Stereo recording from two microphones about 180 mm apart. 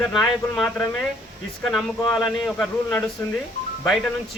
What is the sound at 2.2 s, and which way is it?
Speech, 10° left (ahead or behind).